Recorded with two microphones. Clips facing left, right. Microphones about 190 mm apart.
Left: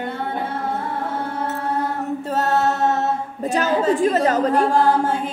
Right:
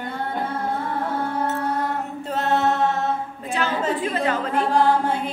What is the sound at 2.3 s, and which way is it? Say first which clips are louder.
Mantra: left 1 dB; 40° left (ahead or behind).